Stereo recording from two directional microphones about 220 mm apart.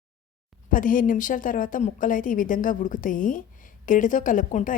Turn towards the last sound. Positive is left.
turn(degrees=35)  # may be behind; listen again after turning